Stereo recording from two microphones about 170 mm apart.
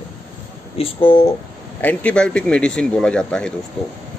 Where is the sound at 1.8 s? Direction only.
5° left (ahead or behind).